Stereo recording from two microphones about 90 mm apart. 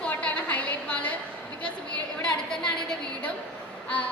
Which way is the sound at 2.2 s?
10° left (ahead or behind).